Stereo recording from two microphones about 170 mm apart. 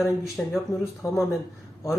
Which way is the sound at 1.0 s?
20° left (ahead or behind).